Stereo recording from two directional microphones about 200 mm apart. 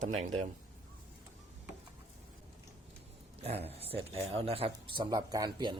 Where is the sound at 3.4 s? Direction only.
30° right (ahead or behind).